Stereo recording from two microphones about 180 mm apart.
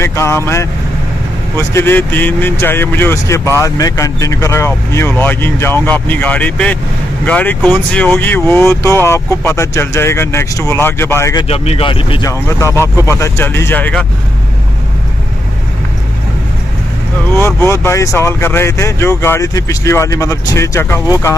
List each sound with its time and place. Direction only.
0.0 s speech: 15° left (ahead or behind)
1.6 s speech: 15° left (ahead or behind)
11.4 s speech: 35° left (ahead or behind)
12.3 s speech: 15° left (ahead or behind)
17.4 s speech: 15° left (ahead or behind)